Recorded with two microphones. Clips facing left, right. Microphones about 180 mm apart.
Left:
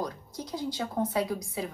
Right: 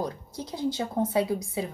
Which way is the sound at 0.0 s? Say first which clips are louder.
Right 2 dB; 25° right (ahead or behind).